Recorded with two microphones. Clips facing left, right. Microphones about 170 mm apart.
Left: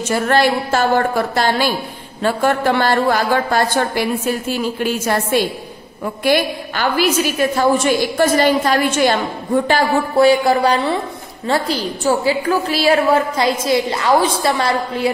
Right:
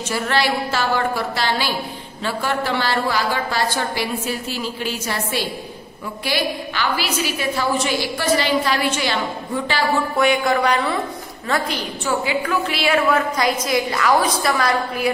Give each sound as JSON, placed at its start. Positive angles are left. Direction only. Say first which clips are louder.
{"t": 0.1, "sound": "a woman's voice", "louder": "left 6 dB", "side_deg": 50}
{"t": 10.1, "sound": "music", "louder": "left 8 dB", "side_deg": 35}
{"t": 11.4, "sound": "a woman's voice", "louder": "left 5 dB", "side_deg": 30}